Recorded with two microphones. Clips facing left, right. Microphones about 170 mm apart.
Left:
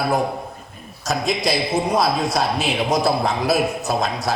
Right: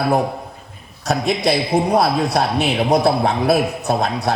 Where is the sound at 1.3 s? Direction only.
60° right (ahead or behind).